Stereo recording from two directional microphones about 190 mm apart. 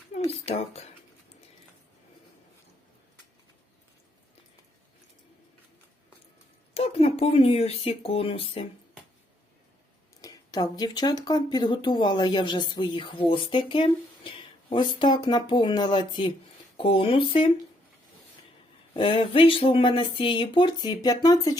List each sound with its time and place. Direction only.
0.4 s speech: 35° left (ahead or behind)
6.7 s speech: 30° left (ahead or behind)
10.2 s speech: 20° left (ahead or behind)
18.9 s speech: 30° left (ahead or behind)